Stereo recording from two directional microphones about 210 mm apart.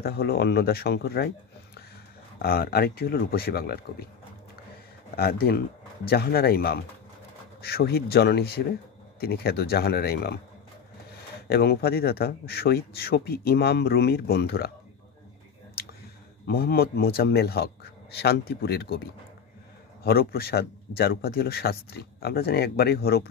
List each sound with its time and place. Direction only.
0.0 s speech: 50° left (ahead or behind)
2.3 s speech: 45° left (ahead or behind)
5.1 s speech: 45° left (ahead or behind)
11.4 s speech: 50° left (ahead or behind)
16.4 s speech: 45° left (ahead or behind)